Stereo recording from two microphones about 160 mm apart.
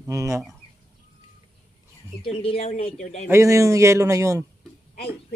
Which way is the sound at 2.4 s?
40° left (ahead or behind).